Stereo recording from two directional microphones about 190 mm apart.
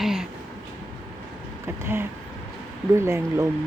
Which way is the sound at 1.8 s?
10° right (ahead or behind).